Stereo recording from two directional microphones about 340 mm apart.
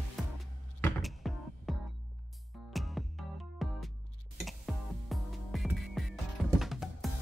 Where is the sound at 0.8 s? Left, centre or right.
Centre.